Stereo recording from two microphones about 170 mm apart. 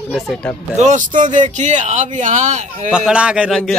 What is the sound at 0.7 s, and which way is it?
Speech, 45° right (ahead or behind).